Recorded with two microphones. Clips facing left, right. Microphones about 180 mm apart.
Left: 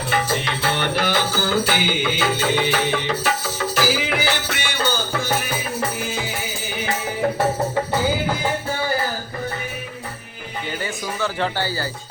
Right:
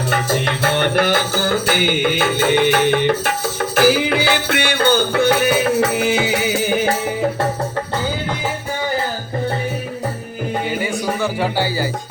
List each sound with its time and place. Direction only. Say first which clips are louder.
0.1 s music: right 2 dB; 50° right (ahead or behind); by 6.7 s 75° right (ahead or behind)
11.2 s speech: right 1 dB; 10° right (ahead or behind)